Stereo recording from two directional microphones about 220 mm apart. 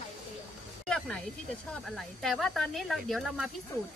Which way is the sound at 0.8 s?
5° left (ahead or behind).